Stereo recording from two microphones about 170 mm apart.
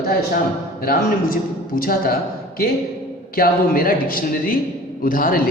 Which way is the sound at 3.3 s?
60° left (ahead or behind).